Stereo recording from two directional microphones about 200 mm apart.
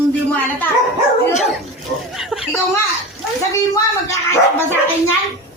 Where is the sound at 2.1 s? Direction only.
Centre (ahead or behind).